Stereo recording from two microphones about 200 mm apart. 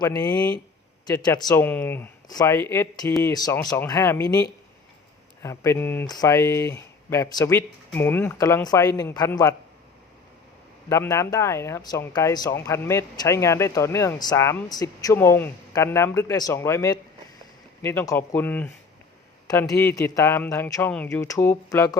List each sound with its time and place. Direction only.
0.0 s speech: 20° left (ahead or behind)
1.6 s speech: 10° left (ahead or behind)
10.8 s speech: 15° left (ahead or behind)